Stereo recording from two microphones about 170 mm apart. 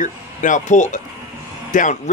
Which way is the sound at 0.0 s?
50° left (ahead or behind).